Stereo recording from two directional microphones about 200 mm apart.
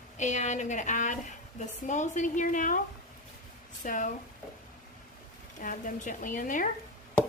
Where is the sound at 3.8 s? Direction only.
40° left (ahead or behind).